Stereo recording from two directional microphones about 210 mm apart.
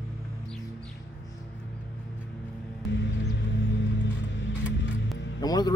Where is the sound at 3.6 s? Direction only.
55° left (ahead or behind).